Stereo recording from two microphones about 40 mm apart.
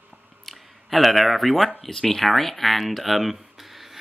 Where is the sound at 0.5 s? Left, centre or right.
Centre.